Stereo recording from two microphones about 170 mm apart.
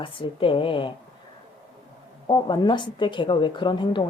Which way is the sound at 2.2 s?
25° left (ahead or behind).